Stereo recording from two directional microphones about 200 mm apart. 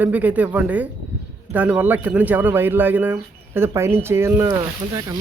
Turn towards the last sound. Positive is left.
turn(degrees=-20)  # may be behind; listen again after turning